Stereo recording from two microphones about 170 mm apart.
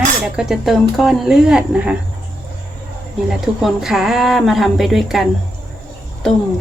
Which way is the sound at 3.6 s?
Centre (ahead or behind).